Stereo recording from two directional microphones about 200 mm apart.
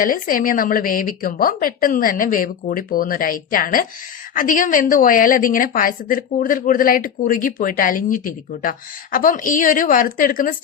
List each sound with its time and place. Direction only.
0.0 s a woman's voice: 45° left (ahead or behind)